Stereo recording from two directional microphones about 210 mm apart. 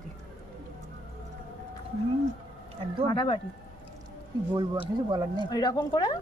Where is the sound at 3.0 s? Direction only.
20° left (ahead or behind).